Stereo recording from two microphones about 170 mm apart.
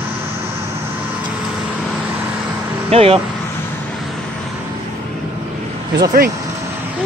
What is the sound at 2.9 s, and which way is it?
Speech, 35° right (ahead or behind).